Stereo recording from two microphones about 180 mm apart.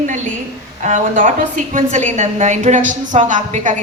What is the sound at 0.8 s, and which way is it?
A woman's voice, 45° right (ahead or behind).